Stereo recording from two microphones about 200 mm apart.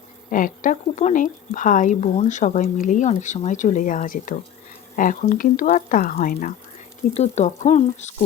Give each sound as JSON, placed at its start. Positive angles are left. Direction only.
{"t": 0.3, "sound": "speech", "side_deg": 40}